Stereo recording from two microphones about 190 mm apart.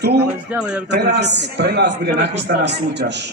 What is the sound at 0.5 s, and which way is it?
Speech, 5° right (ahead or behind).